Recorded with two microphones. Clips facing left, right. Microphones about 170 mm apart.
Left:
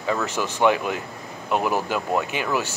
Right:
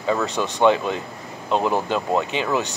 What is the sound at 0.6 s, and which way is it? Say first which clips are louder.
Speech: right 3 dB; 25° right (ahead or behind).